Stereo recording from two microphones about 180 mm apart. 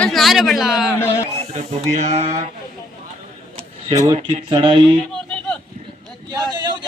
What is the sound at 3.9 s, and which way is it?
Speech, 20° right (ahead or behind).